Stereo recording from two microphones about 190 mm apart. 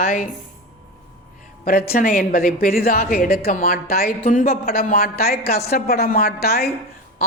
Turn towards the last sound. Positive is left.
turn(degrees=55)  # may be behind; listen again after turning